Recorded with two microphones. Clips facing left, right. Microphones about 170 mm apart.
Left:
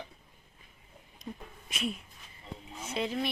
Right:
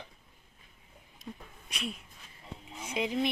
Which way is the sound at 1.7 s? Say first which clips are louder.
Left 4 dB; centre (ahead or behind).